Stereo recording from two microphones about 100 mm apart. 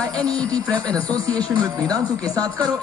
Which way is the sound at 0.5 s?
40° right (ahead or behind).